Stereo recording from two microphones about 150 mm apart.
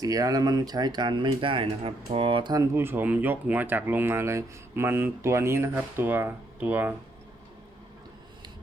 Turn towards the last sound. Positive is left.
turn(degrees=-10)  # may be behind; listen again after turning